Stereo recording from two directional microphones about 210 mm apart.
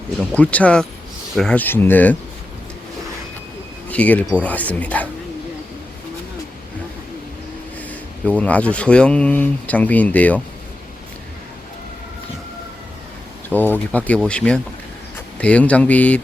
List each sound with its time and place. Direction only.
0.3 s speech: 5° left (ahead or behind)
3.8 s speech: 5° left (ahead or behind)
8.3 s speech: 5° left (ahead or behind)
13.5 s speech: 10° left (ahead or behind)